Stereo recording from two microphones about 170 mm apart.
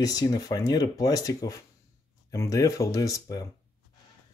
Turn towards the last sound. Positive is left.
turn(degrees=20)  # may be behind; listen again after turning